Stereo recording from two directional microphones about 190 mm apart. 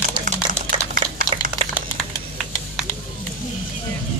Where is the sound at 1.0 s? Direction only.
25° right (ahead or behind).